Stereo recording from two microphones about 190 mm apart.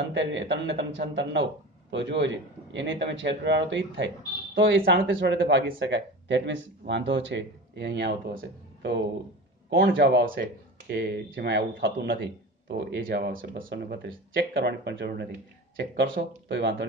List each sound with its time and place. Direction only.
0.1 s a man's voice: 70° right (ahead or behind)
5.1 s a man's voice: 70° right (ahead or behind)
13.0 s speech: 55° right (ahead or behind)
13.7 s a man's voice: 65° right (ahead or behind)